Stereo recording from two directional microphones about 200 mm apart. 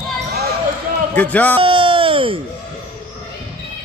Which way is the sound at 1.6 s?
25° right (ahead or behind).